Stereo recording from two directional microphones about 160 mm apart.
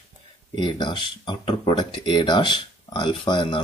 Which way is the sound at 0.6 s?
30° left (ahead or behind).